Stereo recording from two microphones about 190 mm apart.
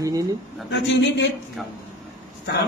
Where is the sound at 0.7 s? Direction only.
65° left (ahead or behind).